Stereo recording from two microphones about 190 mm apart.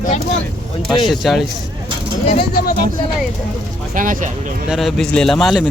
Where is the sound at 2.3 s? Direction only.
50° left (ahead or behind).